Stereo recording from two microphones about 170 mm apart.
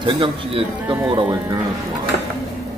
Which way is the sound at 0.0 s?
30° right (ahead or behind).